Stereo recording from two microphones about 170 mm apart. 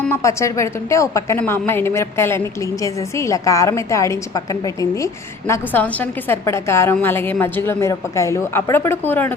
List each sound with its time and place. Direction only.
0.1 s a woman's voice: 15° left (ahead or behind)